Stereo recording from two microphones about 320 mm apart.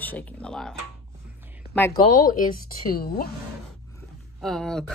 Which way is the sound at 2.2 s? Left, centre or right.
Left.